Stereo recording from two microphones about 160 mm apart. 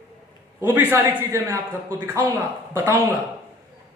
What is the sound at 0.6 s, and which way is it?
Speech, 10° right (ahead or behind).